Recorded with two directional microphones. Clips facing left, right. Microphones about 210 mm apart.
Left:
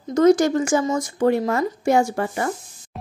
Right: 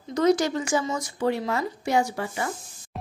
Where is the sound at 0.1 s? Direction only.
45° left (ahead or behind).